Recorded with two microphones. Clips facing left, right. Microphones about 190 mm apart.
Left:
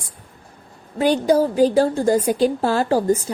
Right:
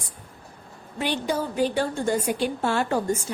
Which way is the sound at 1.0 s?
40° left (ahead or behind).